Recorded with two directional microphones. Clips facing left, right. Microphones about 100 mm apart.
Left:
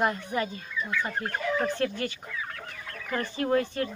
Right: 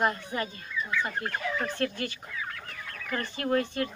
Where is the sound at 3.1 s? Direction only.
25° left (ahead or behind).